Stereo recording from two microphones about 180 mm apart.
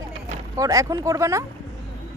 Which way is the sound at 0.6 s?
20° right (ahead or behind).